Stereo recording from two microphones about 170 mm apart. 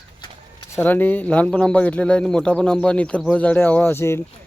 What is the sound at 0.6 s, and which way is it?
Speech, 15° left (ahead or behind).